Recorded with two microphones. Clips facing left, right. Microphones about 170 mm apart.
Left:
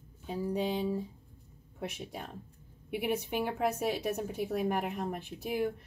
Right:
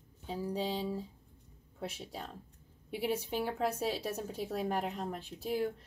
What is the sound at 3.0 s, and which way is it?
A woman's voice, 55° left (ahead or behind).